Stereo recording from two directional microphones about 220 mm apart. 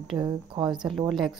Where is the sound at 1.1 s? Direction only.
Centre (ahead or behind).